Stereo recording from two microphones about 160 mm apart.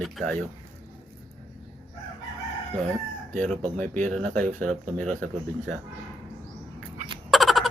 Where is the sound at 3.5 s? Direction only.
55° right (ahead or behind).